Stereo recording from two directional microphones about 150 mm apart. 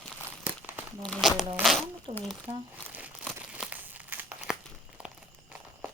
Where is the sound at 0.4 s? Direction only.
15° right (ahead or behind).